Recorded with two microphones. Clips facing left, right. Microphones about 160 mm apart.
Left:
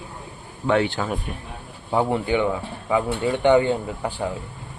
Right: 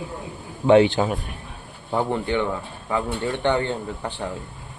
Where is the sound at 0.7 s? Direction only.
20° right (ahead or behind).